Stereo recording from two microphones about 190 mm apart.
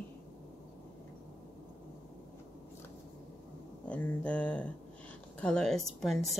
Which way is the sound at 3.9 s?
5° left (ahead or behind).